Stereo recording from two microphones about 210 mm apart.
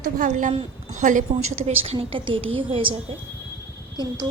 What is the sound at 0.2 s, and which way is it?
A woman's voice, 35° right (ahead or behind).